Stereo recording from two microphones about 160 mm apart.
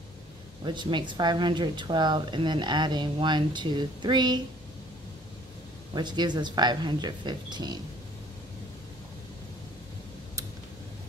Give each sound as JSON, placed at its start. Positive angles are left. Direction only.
{"t": 0.7, "sound": "speech", "side_deg": -30}
{"t": 5.9, "sound": "speech", "side_deg": -25}